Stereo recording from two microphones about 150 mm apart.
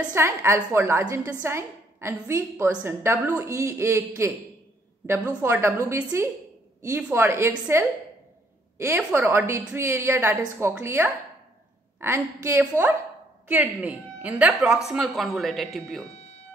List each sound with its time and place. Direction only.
0.0 s a woman's voice: 15° right (ahead or behind); by 15.8 s centre (ahead or behind)